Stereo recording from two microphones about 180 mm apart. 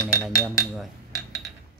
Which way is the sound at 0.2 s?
15° left (ahead or behind).